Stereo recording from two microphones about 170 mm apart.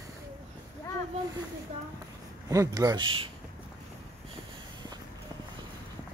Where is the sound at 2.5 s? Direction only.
20° right (ahead or behind).